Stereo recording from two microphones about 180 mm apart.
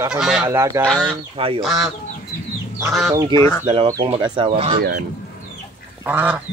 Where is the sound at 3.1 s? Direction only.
15° right (ahead or behind).